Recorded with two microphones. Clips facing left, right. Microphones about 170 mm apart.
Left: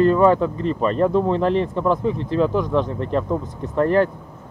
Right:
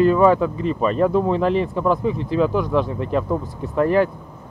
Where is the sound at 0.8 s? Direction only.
35° left (ahead or behind).